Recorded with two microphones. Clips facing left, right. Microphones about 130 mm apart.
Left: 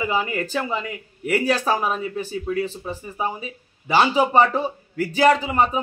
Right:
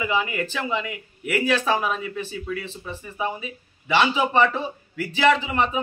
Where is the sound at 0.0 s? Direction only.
35° left (ahead or behind).